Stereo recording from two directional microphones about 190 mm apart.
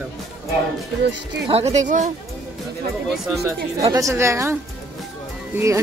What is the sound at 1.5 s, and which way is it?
Speech, 35° right (ahead or behind).